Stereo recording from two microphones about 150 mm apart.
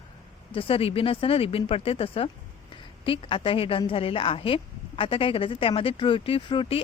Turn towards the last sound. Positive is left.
turn(degrees=40)  # may be behind; listen again after turning